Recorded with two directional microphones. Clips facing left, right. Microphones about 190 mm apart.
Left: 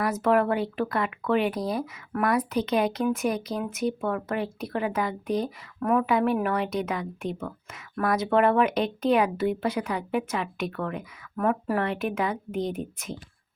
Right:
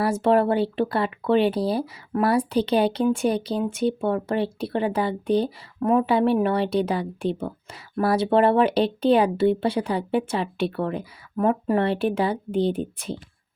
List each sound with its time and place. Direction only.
0.0 s speech: 30° right (ahead or behind)